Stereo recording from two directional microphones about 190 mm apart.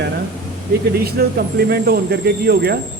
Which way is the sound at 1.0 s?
55° right (ahead or behind).